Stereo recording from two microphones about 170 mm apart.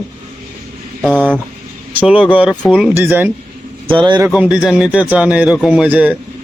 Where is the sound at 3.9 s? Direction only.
25° right (ahead or behind).